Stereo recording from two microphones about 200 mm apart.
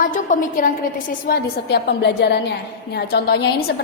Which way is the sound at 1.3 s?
50° left (ahead or behind).